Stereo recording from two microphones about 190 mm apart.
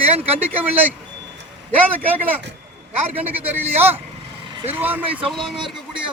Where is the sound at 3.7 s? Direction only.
35° right (ahead or behind).